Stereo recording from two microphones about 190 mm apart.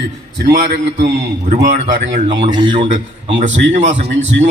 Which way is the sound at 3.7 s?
35° right (ahead or behind).